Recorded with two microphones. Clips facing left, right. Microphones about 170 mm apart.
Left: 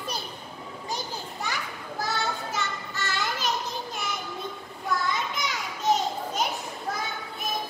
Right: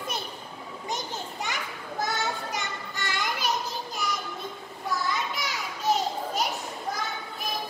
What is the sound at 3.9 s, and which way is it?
Music, centre (ahead or behind).